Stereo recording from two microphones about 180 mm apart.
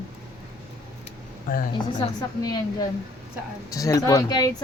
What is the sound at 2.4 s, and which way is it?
Speech, 25° left (ahead or behind).